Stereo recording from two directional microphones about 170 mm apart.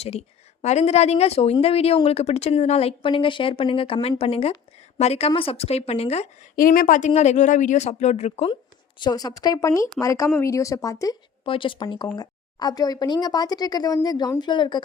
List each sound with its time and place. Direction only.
0.0 s speech: 40° left (ahead or behind)
6.6 s speech: 55° left (ahead or behind); by 8.5 s 40° left (ahead or behind)
9.0 s a woman's voice: 25° left (ahead or behind)
11.4 s a woman's voice: 30° left (ahead or behind)